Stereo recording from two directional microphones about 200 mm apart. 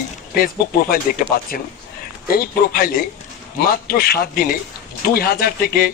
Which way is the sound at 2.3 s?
50° left (ahead or behind).